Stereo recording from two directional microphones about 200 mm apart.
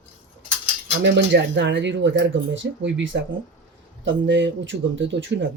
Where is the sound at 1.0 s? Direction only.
60° right (ahead or behind).